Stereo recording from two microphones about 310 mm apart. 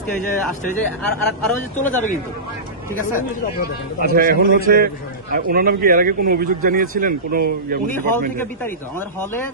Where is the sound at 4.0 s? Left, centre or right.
Right.